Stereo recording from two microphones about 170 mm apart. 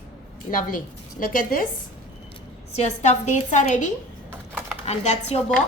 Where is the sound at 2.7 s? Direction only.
40° left (ahead or behind).